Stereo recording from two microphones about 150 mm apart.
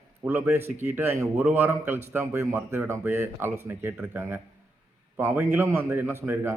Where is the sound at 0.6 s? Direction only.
50° right (ahead or behind).